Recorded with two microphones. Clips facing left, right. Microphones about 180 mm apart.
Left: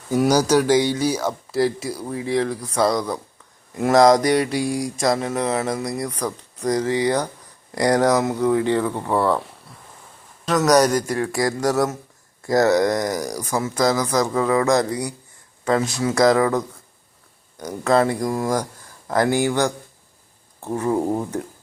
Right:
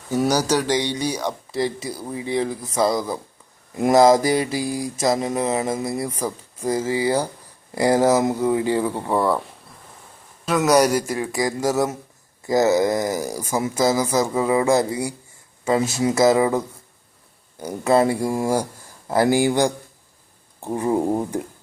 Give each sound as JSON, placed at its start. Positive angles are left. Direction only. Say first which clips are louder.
{"t": 0.1, "sound": "speech", "louder": "left 3 dB", "side_deg": 10}
{"t": 10.4, "sound": "speech", "louder": "left 1 dB", "side_deg": -5}